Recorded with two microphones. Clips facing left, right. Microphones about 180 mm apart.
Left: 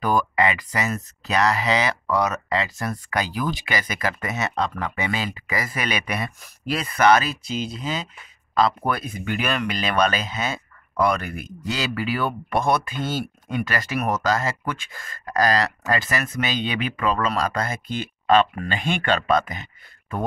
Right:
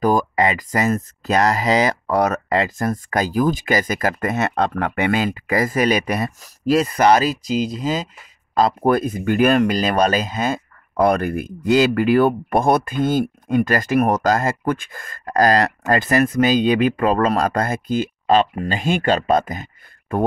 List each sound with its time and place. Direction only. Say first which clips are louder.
0.0 s speech: right 4 dB; 40° right (ahead or behind)